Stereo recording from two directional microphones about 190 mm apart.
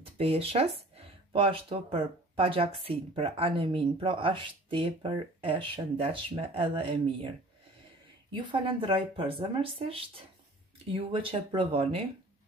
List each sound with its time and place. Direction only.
0.2 s speech: 30° right (ahead or behind)